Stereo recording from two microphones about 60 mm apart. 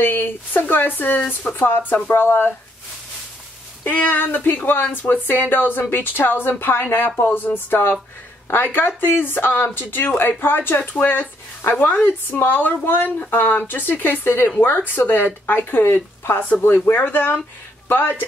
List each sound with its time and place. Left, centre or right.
0.0 s speech: left
3.8 s speech: left